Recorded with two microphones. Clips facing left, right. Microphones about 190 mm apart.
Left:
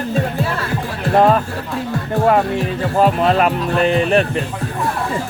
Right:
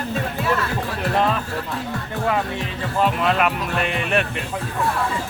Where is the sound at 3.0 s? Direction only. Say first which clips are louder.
Left 5 dB; 35° left (ahead or behind).